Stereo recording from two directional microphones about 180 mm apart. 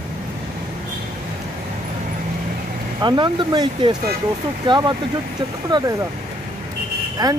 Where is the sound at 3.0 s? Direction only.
25° right (ahead or behind).